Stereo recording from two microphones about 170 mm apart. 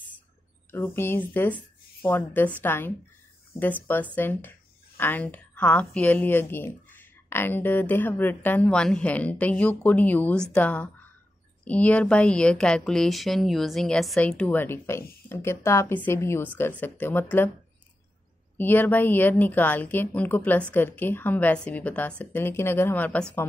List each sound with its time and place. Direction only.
0.7 s speech: 15° left (ahead or behind)
18.6 s speech: 10° left (ahead or behind)